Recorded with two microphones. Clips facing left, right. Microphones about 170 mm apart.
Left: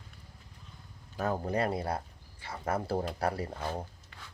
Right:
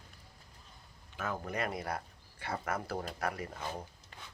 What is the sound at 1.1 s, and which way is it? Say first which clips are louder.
Speech: left 6 dB; 35° left (ahead or behind).